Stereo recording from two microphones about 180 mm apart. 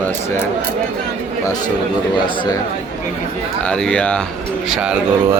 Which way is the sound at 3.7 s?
5° left (ahead or behind).